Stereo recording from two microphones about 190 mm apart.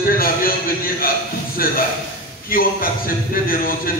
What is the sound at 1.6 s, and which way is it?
A man's voice, 50° left (ahead or behind).